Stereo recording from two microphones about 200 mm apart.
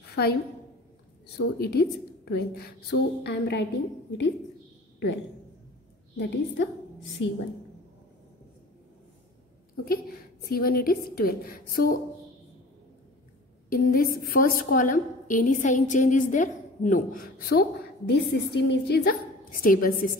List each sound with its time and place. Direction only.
0.0 s a sound: 55° left (ahead or behind)
1.4 s a woman's voice: 55° left (ahead or behind)
6.1 s a woman's voice: 60° left (ahead or behind)
7.2 s a woman's voice: 70° left (ahead or behind)
9.8 s a woman's voice: 50° left (ahead or behind)
13.7 s a woman's voice: 45° left (ahead or behind)